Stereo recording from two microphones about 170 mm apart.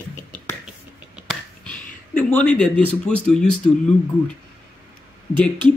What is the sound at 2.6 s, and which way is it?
Speech, 5° left (ahead or behind).